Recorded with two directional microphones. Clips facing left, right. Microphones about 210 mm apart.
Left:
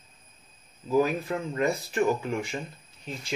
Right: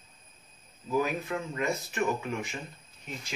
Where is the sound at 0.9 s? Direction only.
35° left (ahead or behind).